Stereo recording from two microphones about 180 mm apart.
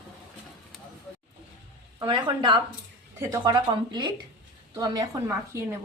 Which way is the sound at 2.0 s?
25° right (ahead or behind).